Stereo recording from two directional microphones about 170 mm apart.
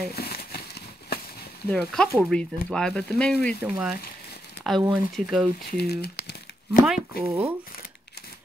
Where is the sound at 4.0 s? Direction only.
70° left (ahead or behind).